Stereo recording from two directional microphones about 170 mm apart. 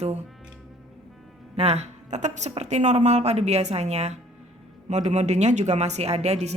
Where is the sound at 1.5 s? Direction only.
40° right (ahead or behind).